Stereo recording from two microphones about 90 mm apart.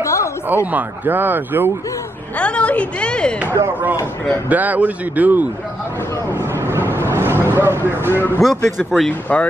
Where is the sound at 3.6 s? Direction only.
90° right.